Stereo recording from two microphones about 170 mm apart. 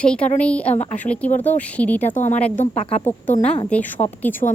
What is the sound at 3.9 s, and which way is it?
Speech, 40° left (ahead or behind).